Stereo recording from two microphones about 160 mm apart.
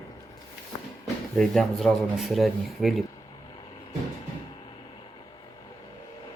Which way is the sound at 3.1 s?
25° left (ahead or behind).